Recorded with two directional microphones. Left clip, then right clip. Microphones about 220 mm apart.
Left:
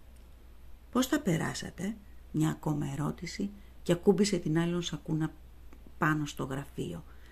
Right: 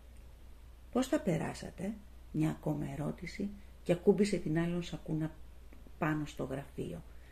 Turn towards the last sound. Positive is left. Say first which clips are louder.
# left 2 dB
turn(degrees=50)  # may be behind; listen again after turning